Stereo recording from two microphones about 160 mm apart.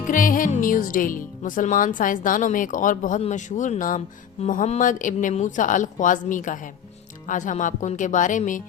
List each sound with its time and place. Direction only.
0.1 s speech: 55° left (ahead or behind)